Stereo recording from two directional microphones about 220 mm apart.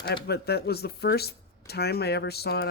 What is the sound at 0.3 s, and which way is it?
Speech, 45° left (ahead or behind).